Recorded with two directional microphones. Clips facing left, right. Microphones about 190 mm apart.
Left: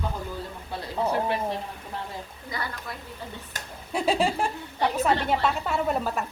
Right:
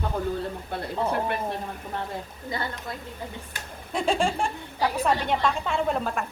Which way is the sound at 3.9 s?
5° left (ahead or behind).